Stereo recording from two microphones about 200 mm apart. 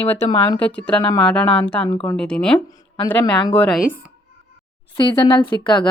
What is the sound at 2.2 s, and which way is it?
Speech, 5° left (ahead or behind).